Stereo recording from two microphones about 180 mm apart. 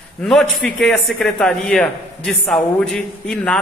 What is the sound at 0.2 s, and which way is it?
A man's voice, centre (ahead or behind).